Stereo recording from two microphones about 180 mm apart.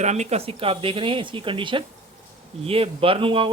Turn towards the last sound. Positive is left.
turn(degrees=-30)  # may be behind; listen again after turning